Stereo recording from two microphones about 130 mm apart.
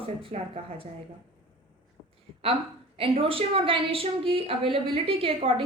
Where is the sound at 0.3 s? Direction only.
55° right (ahead or behind).